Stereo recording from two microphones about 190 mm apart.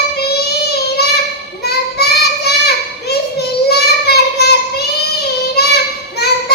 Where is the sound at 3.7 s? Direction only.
60° left (ahead or behind).